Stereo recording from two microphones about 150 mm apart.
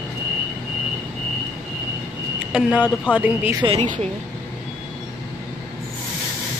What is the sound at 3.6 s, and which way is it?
Speech, 35° right (ahead or behind).